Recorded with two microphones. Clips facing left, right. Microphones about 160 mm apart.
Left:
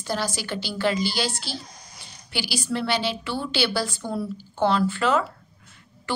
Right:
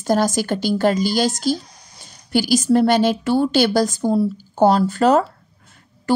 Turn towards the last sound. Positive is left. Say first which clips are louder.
# right 11 dB
turn(degrees=-40)  # may be behind; listen again after turning